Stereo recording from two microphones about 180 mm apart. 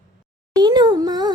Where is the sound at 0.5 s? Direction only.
25° right (ahead or behind).